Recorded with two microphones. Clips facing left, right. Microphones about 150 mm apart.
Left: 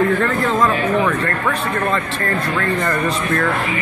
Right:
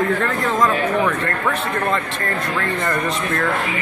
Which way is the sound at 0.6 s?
5° right (ahead or behind).